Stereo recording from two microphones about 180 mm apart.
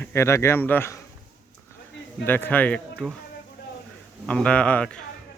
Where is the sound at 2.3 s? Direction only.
10° left (ahead or behind).